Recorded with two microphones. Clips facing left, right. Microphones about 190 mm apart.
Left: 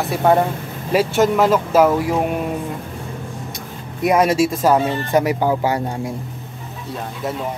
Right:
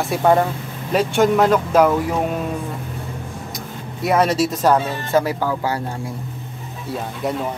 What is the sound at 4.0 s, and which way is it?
Speech, 10° left (ahead or behind).